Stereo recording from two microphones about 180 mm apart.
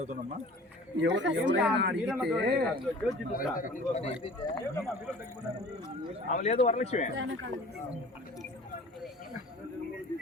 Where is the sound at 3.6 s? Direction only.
40° left (ahead or behind).